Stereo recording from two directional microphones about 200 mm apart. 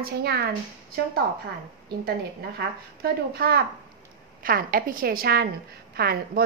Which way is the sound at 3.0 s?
50° right (ahead or behind).